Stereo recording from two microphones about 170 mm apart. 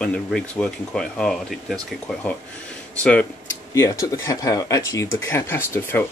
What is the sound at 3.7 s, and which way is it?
Speech, 15° left (ahead or behind).